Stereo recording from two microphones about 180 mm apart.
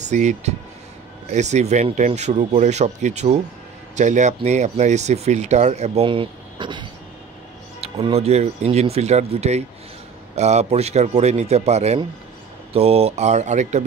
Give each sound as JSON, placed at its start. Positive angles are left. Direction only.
{"t": 0.0, "sound": "speech", "side_deg": -40}